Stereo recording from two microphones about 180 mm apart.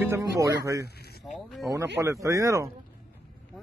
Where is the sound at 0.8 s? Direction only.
60° left (ahead or behind).